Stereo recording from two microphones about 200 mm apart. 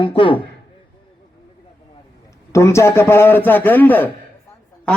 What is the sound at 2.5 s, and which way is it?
A man's voice, 15° left (ahead or behind).